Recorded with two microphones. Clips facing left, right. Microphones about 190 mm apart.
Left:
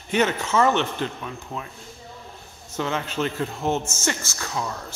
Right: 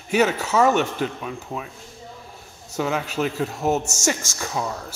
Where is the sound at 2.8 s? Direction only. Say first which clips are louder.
Right 2 dB; 10° right (ahead or behind).